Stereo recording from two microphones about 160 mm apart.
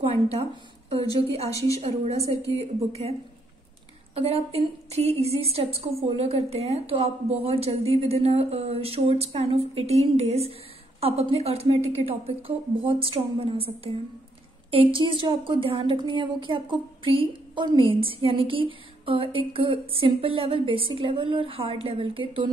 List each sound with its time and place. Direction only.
0.3 s a woman's voice: 40° right (ahead or behind)
1.4 s a woman's voice: 20° left (ahead or behind)
1.8 s a woman's voice: 40° right (ahead or behind)